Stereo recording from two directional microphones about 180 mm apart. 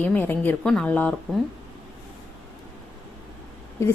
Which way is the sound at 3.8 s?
15° left (ahead or behind).